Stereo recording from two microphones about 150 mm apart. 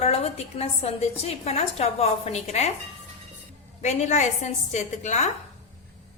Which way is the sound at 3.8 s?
50° left (ahead or behind).